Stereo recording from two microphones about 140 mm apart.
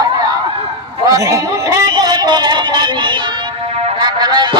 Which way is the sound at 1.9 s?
30° right (ahead or behind).